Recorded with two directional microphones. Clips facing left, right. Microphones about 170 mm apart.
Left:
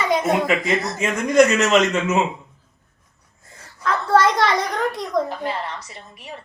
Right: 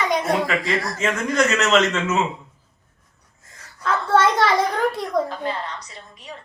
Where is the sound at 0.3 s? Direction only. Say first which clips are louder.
Left 2 dB; 20° left (ahead or behind).